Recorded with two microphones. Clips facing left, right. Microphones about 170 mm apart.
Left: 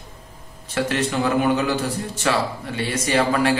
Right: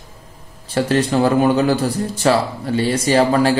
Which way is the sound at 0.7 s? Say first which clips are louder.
Right 6 dB; 35° right (ahead or behind).